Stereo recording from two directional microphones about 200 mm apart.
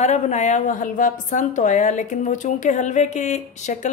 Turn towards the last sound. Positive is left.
turn(degrees=35)  # may be behind; listen again after turning